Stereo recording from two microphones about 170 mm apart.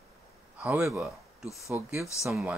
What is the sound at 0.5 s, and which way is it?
Speech, 10° right (ahead or behind).